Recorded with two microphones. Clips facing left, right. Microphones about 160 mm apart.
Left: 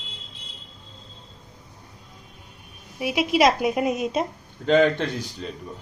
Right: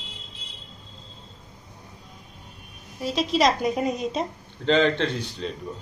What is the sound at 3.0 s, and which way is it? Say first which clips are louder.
A woman's voice: left 2 dB; 10° left (ahead or behind).